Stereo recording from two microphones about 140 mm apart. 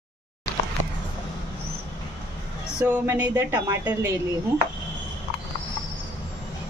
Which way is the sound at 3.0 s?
15° right (ahead or behind).